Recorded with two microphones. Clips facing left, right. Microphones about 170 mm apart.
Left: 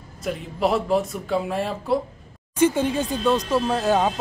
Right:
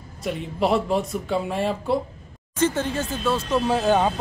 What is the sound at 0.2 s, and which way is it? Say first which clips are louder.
Speech: even; centre (ahead or behind).